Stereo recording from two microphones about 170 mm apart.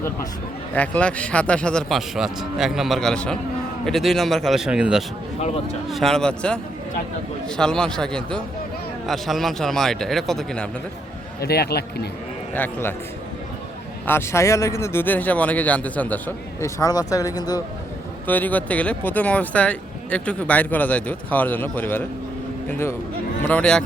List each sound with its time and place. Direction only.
0.7 s a man's voice: 10° left (ahead or behind)
11.3 s a man's voice: 70° left (ahead or behind)
12.5 s speech: 10° left (ahead or behind)
14.1 s speech: 15° left (ahead or behind)
18.3 s speech: 10° left (ahead or behind)
23.4 s speech: 5° left (ahead or behind)